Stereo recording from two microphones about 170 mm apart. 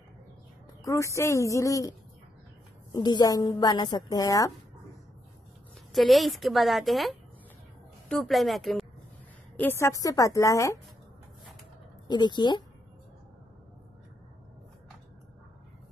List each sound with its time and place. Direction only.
0.8 s speech: 15° left (ahead or behind)
2.9 s a woman's voice: 25° left (ahead or behind)
5.9 s a woman's voice: centre (ahead or behind)
9.6 s a woman's voice: 15° left (ahead or behind)
12.1 s a woman's voice: 25° left (ahead or behind)